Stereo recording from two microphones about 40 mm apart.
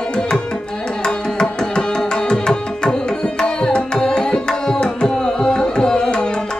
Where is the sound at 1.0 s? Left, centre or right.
Left.